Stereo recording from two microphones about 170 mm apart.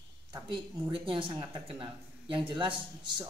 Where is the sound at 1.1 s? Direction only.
30° right (ahead or behind).